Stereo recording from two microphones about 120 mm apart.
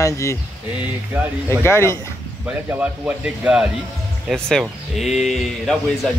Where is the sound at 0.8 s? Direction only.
15° right (ahead or behind).